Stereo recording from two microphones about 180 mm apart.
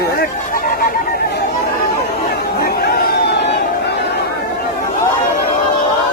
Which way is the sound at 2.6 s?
60° left (ahead or behind).